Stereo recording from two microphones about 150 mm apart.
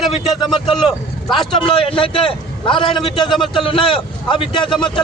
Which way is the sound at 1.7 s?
35° left (ahead or behind).